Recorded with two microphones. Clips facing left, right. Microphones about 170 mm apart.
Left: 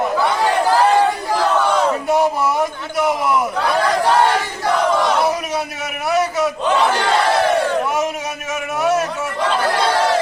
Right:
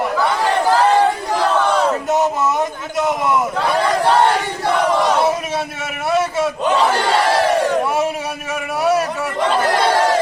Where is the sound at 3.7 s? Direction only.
Centre (ahead or behind).